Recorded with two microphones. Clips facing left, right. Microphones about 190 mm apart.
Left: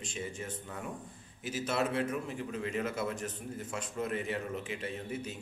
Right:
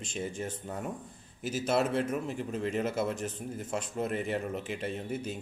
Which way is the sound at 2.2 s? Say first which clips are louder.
Right 4 dB; 45° right (ahead or behind).